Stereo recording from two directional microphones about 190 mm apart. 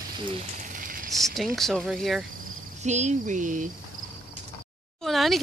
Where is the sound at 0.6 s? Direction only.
45° right (ahead or behind).